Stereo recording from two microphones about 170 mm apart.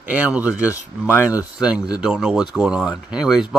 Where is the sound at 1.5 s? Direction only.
5° right (ahead or behind).